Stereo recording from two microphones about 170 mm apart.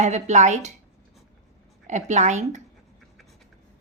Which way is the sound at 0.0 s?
45° right (ahead or behind).